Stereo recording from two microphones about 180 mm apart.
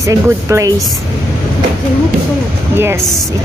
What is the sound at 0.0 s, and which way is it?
Speech, 15° right (ahead or behind).